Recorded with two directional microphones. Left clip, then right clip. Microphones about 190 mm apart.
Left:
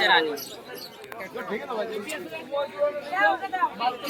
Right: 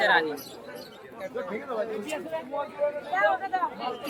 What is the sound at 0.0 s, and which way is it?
Speech, 20° right (ahead or behind).